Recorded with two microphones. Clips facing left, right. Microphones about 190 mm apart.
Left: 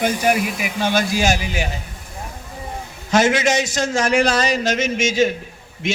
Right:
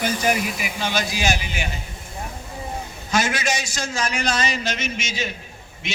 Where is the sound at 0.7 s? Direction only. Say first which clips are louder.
Left 7 dB; 50° left (ahead or behind).